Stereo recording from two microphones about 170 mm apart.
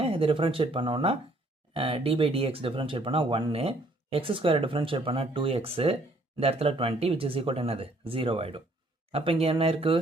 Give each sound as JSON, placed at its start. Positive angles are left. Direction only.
{"t": 0.0, "sound": "speech", "side_deg": -35}